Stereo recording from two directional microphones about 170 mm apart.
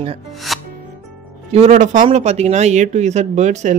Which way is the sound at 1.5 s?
40° right (ahead or behind).